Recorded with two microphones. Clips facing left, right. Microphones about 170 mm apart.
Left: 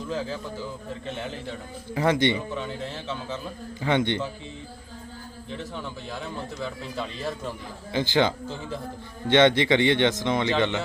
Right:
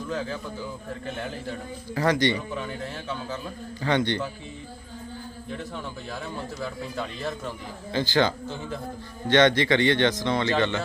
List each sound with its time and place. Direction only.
0.1 s speech: 30° left (ahead or behind)
2.0 s speech: 20° left (ahead or behind)
5.5 s a man's voice: 5° right (ahead or behind)
7.9 s a man's voice: 20° left (ahead or behind)
9.3 s speech: 20° left (ahead or behind)